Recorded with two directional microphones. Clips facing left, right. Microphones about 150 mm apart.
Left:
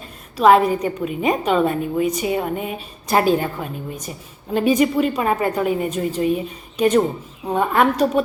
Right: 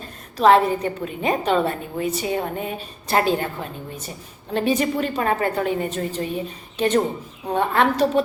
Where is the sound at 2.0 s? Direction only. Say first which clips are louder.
Left 3 dB; 35° right (ahead or behind).